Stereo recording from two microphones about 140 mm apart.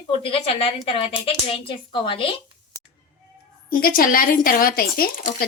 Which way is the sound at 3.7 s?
90° left.